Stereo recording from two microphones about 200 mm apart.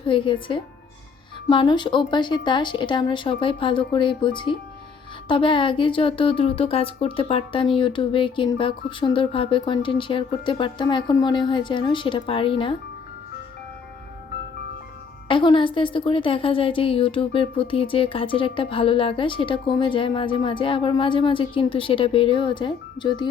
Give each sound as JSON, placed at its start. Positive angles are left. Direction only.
{"t": 0.0, "sound": "a woman's voice", "side_deg": 25}
{"t": 15.3, "sound": "a woman's voice", "side_deg": 25}